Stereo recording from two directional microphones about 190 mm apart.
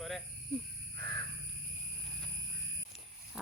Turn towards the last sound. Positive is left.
turn(degrees=-5)  # may be behind; listen again after turning